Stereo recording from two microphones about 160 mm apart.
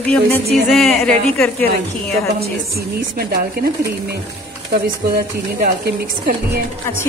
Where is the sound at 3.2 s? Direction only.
80° right.